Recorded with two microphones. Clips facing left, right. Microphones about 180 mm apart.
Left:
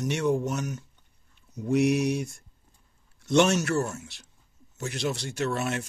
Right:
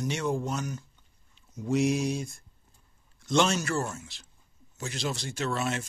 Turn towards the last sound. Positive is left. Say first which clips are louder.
# left 2 dB
turn(degrees=60)  # may be behind; listen again after turning